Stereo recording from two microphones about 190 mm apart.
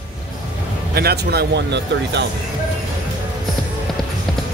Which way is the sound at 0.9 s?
55° right (ahead or behind).